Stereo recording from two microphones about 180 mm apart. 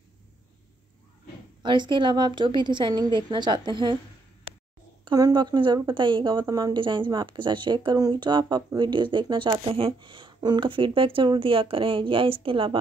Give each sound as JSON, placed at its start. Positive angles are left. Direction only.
{"t": 1.6, "sound": "a woman's voice", "side_deg": -25}
{"t": 5.0, "sound": "a woman's voice", "side_deg": -20}